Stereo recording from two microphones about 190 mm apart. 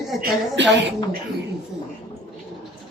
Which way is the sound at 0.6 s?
65° right (ahead or behind).